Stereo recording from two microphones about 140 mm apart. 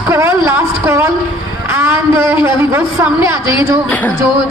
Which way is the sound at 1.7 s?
20° right (ahead or behind).